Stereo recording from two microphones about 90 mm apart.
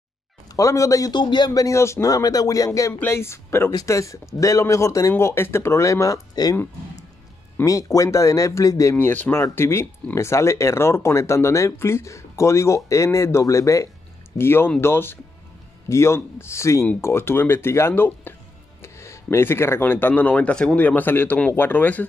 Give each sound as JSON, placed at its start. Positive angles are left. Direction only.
{"t": 0.6, "sound": "speech", "side_deg": 35}
{"t": 1.1, "sound": "speech", "side_deg": 55}
{"t": 2.9, "sound": "speech", "side_deg": 25}
{"t": 7.6, "sound": "speech", "side_deg": 40}
{"t": 8.9, "sound": "speech", "side_deg": 20}